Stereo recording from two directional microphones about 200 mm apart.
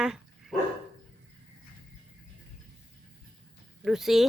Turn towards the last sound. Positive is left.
turn(degrees=0)  # may be behind; listen again after turning